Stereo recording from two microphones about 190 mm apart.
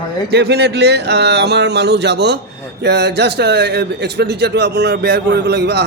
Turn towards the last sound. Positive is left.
turn(degrees=-60)  # may be behind; listen again after turning